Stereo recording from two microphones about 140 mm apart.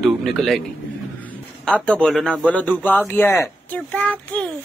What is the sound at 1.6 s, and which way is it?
A man's voice, 5° left (ahead or behind).